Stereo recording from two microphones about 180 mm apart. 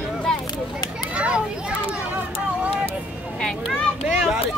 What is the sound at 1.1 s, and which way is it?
Children playing, 5° right (ahead or behind).